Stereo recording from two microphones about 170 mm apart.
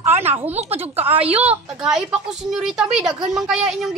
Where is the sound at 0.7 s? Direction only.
35° right (ahead or behind).